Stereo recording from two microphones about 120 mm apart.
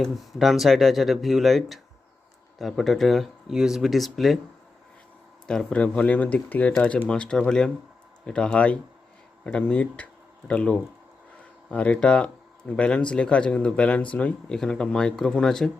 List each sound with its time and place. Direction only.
0.0 s speech: centre (ahead or behind)
5.5 s speech: 10° left (ahead or behind)